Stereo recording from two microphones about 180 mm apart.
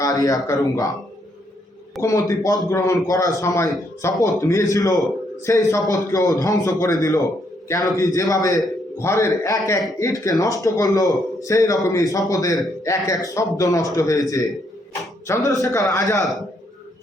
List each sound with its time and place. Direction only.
0.0 s a man's voice: 20° left (ahead or behind)
2.0 s a man's voice: 20° left (ahead or behind)
15.4 s a man's voice: 20° left (ahead or behind)